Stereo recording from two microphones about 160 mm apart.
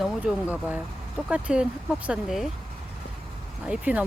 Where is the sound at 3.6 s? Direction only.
5° right (ahead or behind).